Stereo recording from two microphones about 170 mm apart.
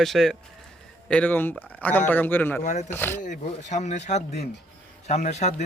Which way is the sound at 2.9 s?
10° left (ahead or behind).